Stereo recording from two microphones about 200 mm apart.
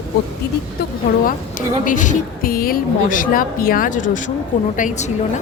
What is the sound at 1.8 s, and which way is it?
A woman's voice, 40° left (ahead or behind).